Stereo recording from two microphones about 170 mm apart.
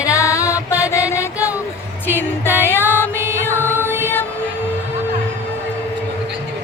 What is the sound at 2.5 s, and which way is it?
Music, 15° left (ahead or behind).